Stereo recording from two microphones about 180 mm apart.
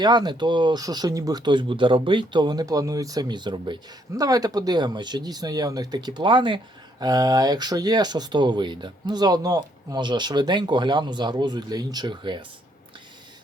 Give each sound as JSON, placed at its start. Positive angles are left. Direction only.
{"t": 0.0, "sound": "speech", "side_deg": -25}